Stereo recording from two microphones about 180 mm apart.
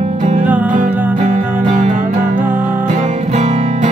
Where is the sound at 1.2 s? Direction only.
45° right (ahead or behind).